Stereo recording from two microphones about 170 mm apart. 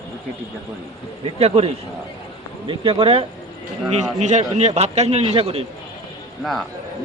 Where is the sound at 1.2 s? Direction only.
35° right (ahead or behind).